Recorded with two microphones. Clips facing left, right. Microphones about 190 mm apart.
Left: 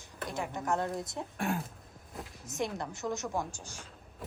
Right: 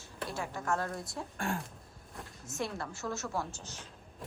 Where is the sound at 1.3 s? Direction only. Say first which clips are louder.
Left 3 dB; centre (ahead or behind).